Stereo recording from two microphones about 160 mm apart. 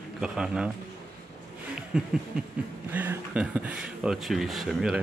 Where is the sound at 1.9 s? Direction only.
5° right (ahead or behind).